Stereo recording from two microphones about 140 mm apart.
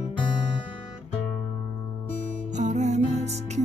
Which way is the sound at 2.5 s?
60° right (ahead or behind).